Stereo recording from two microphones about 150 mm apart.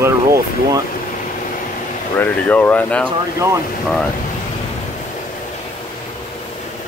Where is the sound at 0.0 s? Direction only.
20° right (ahead or behind).